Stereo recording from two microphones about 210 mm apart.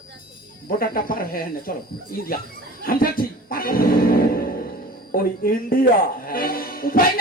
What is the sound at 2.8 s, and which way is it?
Music, 45° left (ahead or behind).